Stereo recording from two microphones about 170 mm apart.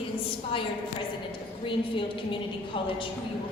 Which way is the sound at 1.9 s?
30° left (ahead or behind).